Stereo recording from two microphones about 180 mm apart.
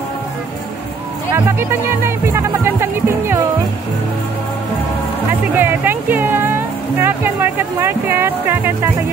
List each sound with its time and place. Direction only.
1.3 s speech: 15° right (ahead or behind)
5.6 s music: 10° right (ahead or behind)